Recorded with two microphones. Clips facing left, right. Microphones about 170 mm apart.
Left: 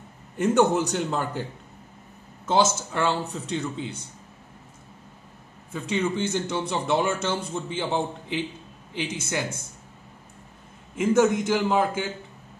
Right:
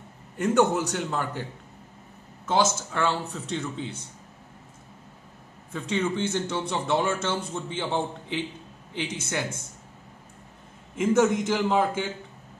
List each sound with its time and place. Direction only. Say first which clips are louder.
0.4 s a man's voice: left 2 dB; 25° left (ahead or behind)
2.4 s a man's voice: left 2 dB; 25° left (ahead or behind)
5.7 s speech: left 1 dB; 10° left (ahead or behind)
11.0 s a man's voice: left 1 dB; centre (ahead or behind)